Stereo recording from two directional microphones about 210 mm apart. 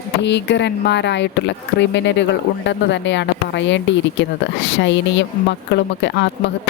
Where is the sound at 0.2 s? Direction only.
55° left (ahead or behind).